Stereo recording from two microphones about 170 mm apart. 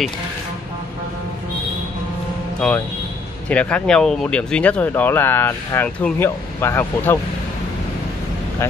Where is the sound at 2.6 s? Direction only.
10° left (ahead or behind).